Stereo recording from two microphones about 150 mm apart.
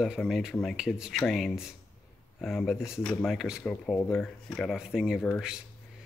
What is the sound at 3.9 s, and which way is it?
Speech, 15° left (ahead or behind).